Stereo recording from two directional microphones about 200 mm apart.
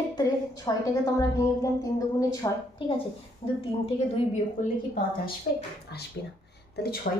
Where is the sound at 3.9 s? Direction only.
35° left (ahead or behind).